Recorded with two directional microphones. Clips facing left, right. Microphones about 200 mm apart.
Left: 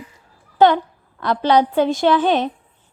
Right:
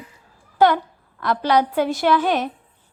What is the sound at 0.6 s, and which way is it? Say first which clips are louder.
A woman's voice: left 3 dB; 25° left (ahead or behind).